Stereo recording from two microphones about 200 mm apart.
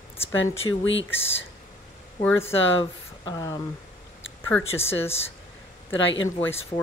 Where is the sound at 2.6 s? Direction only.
70° left (ahead or behind).